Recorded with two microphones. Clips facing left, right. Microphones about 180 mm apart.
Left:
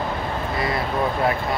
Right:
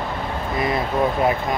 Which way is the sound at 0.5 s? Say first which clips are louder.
Right 4 dB; 20° right (ahead or behind).